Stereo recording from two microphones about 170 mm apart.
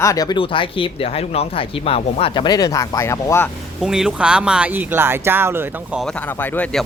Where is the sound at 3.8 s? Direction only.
5° right (ahead or behind).